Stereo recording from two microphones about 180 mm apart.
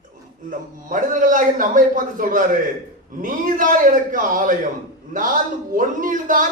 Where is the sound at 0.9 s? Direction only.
50° right (ahead or behind).